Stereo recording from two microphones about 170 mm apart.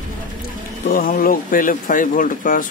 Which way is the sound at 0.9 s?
60° left (ahead or behind).